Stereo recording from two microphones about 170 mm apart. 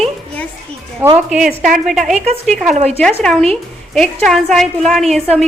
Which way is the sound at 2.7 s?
40° right (ahead or behind).